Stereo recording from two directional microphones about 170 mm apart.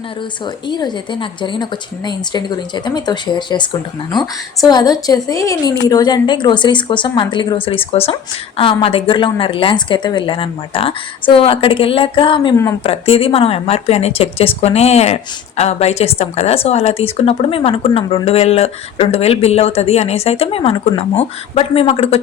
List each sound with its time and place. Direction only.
0.7 s a woman's voice: 25° left (ahead or behind)